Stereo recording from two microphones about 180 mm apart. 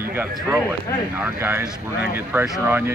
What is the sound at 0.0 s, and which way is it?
Speech, 15° right (ahead or behind).